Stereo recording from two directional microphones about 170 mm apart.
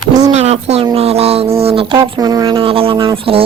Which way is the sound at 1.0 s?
35° right (ahead or behind).